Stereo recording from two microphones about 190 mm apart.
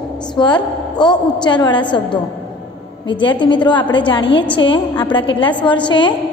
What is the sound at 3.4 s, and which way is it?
A woman's voice, 25° left (ahead or behind).